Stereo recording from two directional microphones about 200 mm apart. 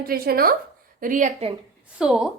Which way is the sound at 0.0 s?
50° right (ahead or behind).